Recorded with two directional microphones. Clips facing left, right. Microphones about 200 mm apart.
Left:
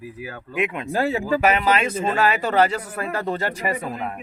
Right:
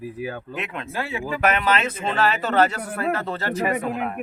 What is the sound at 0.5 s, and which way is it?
Speech, 10° left (ahead or behind).